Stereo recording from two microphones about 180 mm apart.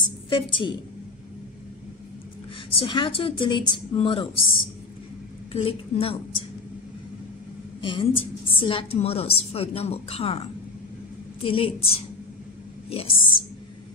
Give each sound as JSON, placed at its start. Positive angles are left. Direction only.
{"t": 0.0, "sound": "a woman's voice", "side_deg": 30}
{"t": 2.7, "sound": "a woman's voice", "side_deg": 30}
{"t": 7.8, "sound": "a woman's voice", "side_deg": 30}